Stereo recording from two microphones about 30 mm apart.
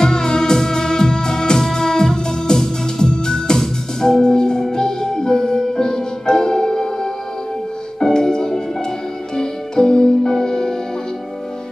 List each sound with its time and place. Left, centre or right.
0.0 s music: left